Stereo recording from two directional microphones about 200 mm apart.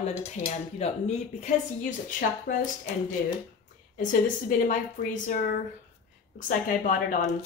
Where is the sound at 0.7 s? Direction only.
35° left (ahead or behind).